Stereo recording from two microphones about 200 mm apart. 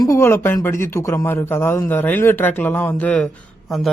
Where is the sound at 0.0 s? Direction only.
15° left (ahead or behind).